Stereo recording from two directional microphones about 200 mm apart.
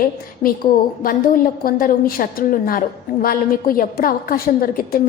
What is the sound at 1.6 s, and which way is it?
A woman's voice, 45° left (ahead or behind).